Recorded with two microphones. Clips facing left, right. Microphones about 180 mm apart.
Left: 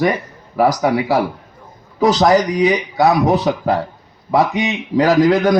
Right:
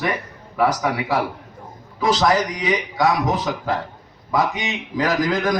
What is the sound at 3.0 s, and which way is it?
A man's voice, 35° left (ahead or behind).